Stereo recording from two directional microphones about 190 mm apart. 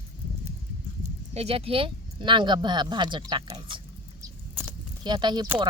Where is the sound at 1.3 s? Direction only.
30° right (ahead or behind).